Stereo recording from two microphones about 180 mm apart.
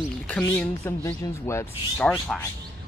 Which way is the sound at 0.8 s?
15° left (ahead or behind).